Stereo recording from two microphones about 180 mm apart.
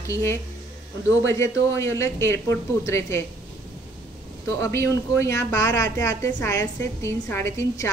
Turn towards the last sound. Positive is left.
turn(degrees=15)  # may be behind; listen again after turning